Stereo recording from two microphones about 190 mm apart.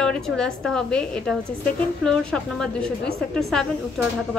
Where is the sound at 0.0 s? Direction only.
5° left (ahead or behind).